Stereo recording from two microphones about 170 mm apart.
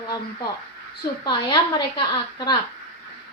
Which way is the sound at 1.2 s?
25° left (ahead or behind).